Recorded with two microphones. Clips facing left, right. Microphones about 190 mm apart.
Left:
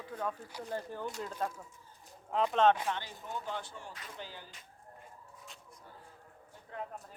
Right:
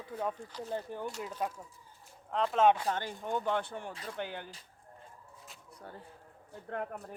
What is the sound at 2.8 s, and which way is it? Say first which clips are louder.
Speech: right 3 dB; 45° right (ahead or behind).